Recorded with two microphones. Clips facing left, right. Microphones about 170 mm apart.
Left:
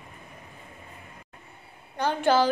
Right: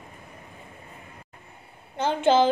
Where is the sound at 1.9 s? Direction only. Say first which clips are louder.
Right 2 dB; 20° right (ahead or behind).